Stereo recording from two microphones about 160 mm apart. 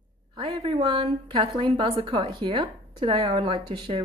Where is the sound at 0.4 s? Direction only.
35° right (ahead or behind).